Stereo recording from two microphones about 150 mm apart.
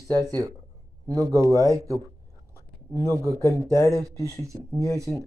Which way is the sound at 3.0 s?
20° right (ahead or behind).